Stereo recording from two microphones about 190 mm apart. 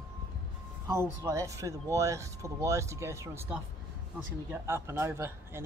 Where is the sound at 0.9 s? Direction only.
15° right (ahead or behind).